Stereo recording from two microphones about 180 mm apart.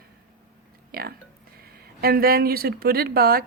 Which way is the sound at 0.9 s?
55° right (ahead or behind).